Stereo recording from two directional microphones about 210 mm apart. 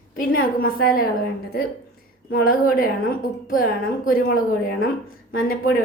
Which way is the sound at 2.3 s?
40° left (ahead or behind).